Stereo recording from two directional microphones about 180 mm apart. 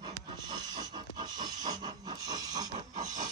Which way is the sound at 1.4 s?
20° right (ahead or behind).